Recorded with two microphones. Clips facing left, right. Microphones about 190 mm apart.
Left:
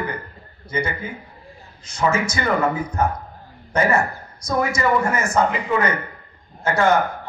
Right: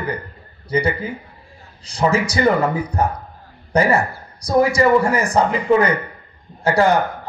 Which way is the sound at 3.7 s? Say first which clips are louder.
Right 3 dB; 35° right (ahead or behind).